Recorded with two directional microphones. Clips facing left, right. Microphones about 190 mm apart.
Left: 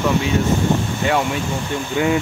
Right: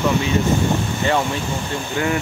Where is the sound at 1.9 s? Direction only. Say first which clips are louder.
Left 3 dB; 20° left (ahead or behind).